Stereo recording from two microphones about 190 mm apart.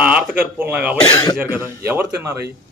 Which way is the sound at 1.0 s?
20° left (ahead or behind).